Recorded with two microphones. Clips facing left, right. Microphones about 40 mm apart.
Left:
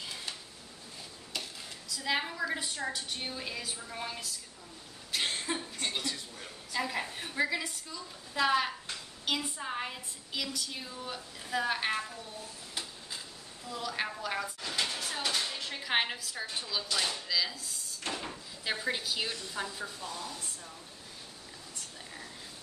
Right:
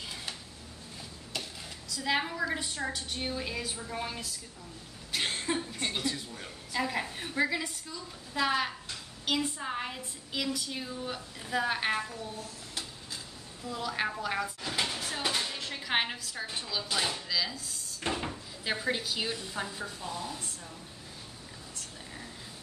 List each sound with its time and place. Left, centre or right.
0.0 s a sound: centre
1.3 s a woman's voice: centre
5.1 s chuckle: centre
9.2 s a woman's voice: centre
13.7 s a woman's voice: centre
16.9 s speech: centre
17.3 s a woman's voice: centre
18.0 s speech: centre
18.3 s a woman's voice: centre